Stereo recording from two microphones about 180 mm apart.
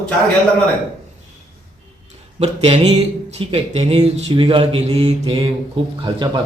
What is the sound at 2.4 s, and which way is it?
A man's voice, 35° right (ahead or behind).